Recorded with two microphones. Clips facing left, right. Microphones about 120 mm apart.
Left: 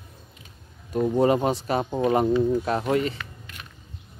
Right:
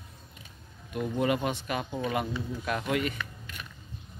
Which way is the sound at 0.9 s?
35° left (ahead or behind).